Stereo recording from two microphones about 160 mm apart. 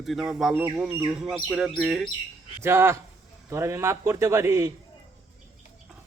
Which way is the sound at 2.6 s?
15° right (ahead or behind).